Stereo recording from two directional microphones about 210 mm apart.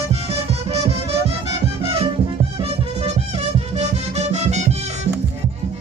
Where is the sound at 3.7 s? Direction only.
30° right (ahead or behind).